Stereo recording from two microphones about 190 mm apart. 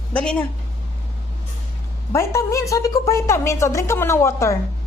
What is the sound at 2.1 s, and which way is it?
A woman's voice, 15° left (ahead or behind).